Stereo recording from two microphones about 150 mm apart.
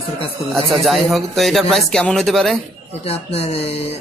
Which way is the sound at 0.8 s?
Centre (ahead or behind).